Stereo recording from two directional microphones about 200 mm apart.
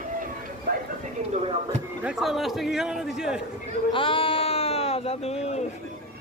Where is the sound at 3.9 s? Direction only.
25° left (ahead or behind).